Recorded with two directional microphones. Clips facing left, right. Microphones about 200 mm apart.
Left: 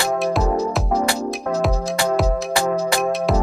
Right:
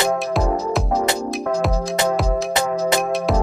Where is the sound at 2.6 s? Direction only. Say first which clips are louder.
Left 3 dB; 20° right (ahead or behind).